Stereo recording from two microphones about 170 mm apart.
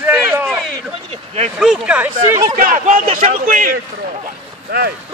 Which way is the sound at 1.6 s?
5° right (ahead or behind).